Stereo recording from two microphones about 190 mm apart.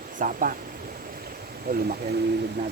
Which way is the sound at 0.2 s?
45° right (ahead or behind).